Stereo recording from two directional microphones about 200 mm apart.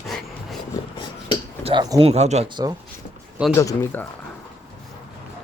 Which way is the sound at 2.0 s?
35° right (ahead or behind).